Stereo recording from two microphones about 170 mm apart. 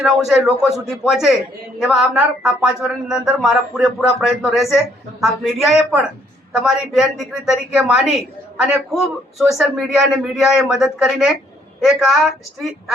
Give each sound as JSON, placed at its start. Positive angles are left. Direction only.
{"t": 0.0, "sound": "speech", "side_deg": 0}